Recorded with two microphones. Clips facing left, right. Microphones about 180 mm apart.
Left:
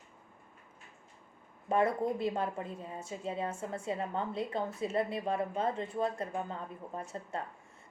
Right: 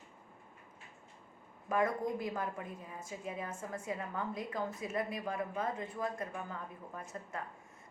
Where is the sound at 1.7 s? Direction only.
30° left (ahead or behind).